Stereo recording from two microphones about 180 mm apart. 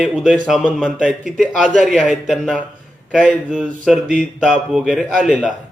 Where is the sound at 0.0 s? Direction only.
5° right (ahead or behind).